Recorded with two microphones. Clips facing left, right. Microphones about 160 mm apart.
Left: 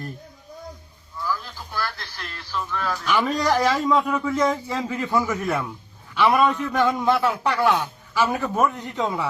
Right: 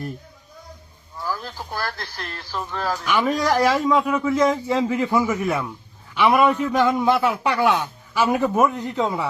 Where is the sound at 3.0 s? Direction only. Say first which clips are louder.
Right 1 dB; 10° right (ahead or behind).